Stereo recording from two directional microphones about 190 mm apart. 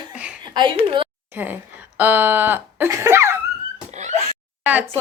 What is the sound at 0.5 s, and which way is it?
Speech, 25° right (ahead or behind).